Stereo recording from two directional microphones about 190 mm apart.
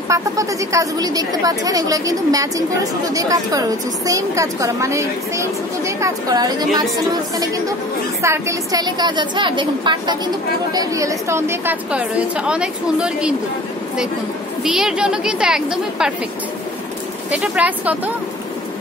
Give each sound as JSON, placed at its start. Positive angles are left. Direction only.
{"t": 0.1, "sound": "a woman's voice", "side_deg": -15}
{"t": 8.2, "sound": "a woman's voice", "side_deg": -15}
{"t": 14.6, "sound": "a woman's voice", "side_deg": -5}
{"t": 17.3, "sound": "a woman's voice", "side_deg": -5}